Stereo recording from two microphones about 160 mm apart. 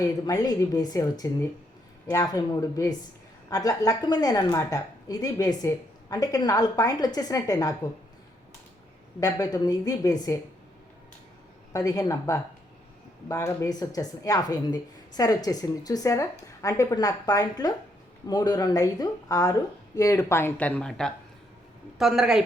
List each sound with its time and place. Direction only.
0.0 s a woman's voice: 20° left (ahead or behind)
9.2 s a woman's voice: 25° left (ahead or behind)
11.7 s a woman's voice: 20° left (ahead or behind); by 22.4 s 5° right (ahead or behind)